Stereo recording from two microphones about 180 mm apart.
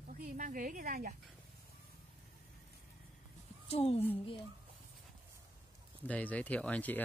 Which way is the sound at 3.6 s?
35° left (ahead or behind).